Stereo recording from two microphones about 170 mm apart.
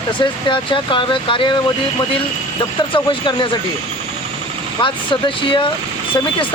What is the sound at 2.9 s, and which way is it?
Speech, 30° left (ahead or behind).